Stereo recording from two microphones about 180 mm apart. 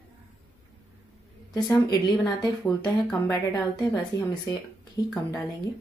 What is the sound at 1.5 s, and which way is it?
Speech, 20° left (ahead or behind).